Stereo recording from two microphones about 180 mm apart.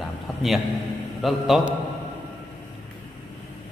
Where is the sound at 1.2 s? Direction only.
Centre (ahead or behind).